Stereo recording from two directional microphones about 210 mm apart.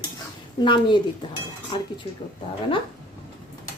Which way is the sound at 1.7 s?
20° left (ahead or behind).